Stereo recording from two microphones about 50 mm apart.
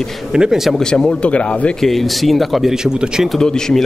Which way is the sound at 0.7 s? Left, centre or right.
Centre.